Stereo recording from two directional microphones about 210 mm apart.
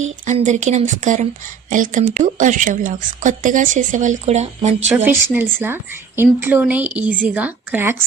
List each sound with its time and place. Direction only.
0.0 s speech: 35° right (ahead or behind)
5.0 s a woman's voice: 10° right (ahead or behind)